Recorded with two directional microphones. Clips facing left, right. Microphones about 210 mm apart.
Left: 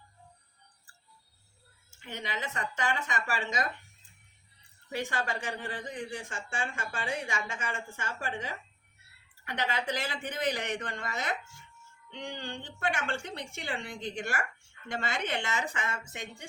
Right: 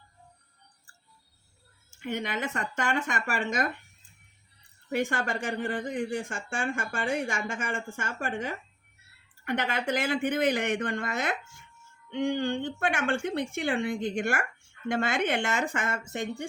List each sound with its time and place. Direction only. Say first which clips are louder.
2.0 s speech: right 7 dB; 55° right (ahead or behind)
4.9 s speech: right 5 dB; 50° right (ahead or behind)